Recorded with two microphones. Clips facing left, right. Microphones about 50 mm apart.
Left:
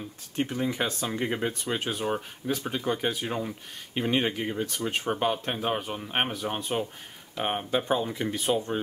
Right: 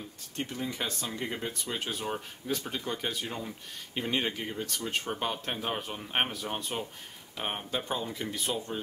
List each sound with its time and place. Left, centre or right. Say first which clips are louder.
0.4 s speech: left 6 dB; left
8.5 s speech: left 6 dB; left